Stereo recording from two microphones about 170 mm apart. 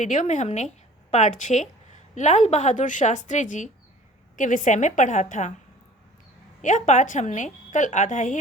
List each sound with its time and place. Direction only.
0.0 s a woman's voice: 45° left (ahead or behind)
6.6 s a woman's voice: 45° left (ahead or behind)